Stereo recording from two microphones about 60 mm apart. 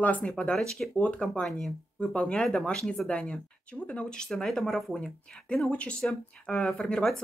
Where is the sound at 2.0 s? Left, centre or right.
Centre.